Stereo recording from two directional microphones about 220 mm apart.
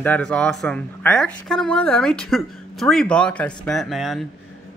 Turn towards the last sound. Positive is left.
turn(degrees=0)  # may be behind; listen again after turning